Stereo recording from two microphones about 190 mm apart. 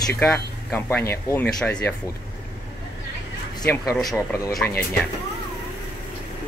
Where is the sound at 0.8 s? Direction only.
15° left (ahead or behind).